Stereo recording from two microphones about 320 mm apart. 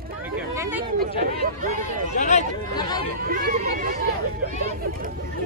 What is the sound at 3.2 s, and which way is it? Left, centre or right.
Speech, right.